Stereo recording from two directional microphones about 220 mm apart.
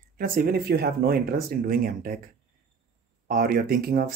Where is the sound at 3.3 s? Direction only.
40° right (ahead or behind).